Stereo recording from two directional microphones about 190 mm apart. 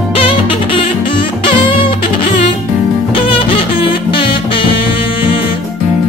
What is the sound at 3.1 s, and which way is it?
Music, 25° left (ahead or behind).